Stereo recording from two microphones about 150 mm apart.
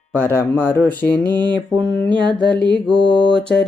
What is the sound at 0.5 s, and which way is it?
Mantra, 10° left (ahead or behind).